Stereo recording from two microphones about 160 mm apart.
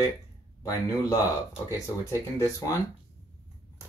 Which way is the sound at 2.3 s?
20° left (ahead or behind).